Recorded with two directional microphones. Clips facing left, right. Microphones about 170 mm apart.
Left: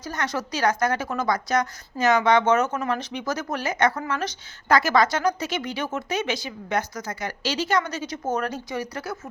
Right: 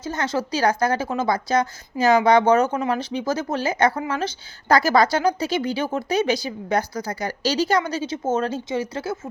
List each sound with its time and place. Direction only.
0.0 s a woman's voice: 25° right (ahead or behind)